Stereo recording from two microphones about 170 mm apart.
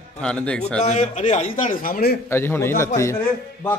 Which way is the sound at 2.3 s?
15° left (ahead or behind).